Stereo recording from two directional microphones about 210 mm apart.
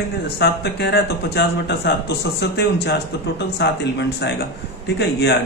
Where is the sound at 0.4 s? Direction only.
50° left (ahead or behind).